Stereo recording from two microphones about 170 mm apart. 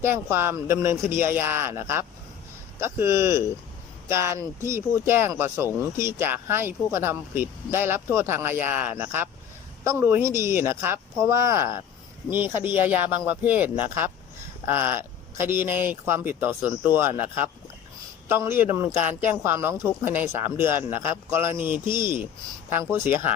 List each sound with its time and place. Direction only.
0.0 s speech: 15° right (ahead or behind)
18.3 s speech: 15° right (ahead or behind)